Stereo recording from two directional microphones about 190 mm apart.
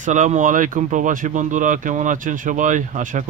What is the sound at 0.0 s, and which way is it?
Speech, 40° right (ahead or behind).